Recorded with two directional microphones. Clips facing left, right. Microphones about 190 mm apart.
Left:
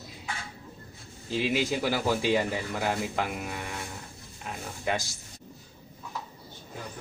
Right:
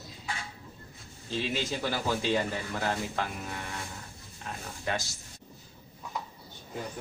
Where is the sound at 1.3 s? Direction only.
10° left (ahead or behind).